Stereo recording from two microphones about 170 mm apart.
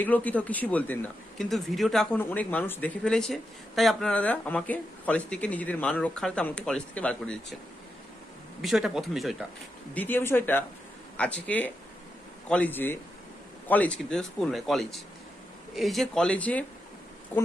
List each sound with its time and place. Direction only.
0.0 s speech: 10° left (ahead or behind)
8.5 s speech: centre (ahead or behind)
9.9 s speech: 10° left (ahead or behind)